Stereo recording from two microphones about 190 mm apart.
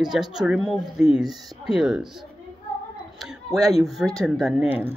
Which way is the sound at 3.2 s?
Centre (ahead or behind).